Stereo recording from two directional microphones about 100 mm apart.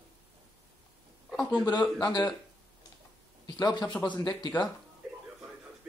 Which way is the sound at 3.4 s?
40° left (ahead or behind).